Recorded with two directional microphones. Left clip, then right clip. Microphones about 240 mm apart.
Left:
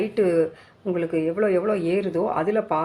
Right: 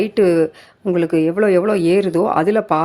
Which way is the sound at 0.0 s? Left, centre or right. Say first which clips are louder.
Right 6 dB; right.